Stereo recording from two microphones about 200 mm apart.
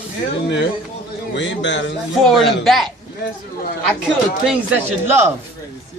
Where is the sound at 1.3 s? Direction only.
65° left (ahead or behind).